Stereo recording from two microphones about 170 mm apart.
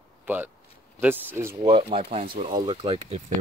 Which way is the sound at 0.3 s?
10° right (ahead or behind).